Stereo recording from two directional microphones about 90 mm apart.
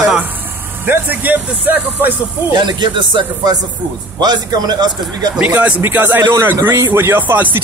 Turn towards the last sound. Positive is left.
turn(degrees=-20)  # may be behind; listen again after turning